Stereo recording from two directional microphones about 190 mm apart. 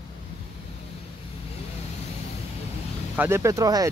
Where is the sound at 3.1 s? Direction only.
15° right (ahead or behind).